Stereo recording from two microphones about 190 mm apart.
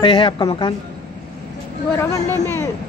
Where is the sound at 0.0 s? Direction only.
25° left (ahead or behind).